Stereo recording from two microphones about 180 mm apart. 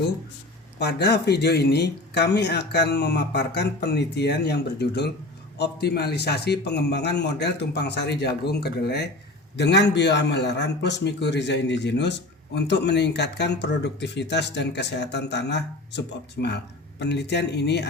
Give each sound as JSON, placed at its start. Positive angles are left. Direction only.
{"t": 0.8, "sound": "a man's voice", "side_deg": 65}